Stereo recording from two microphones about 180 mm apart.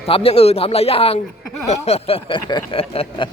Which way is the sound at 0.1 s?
30° left (ahead or behind).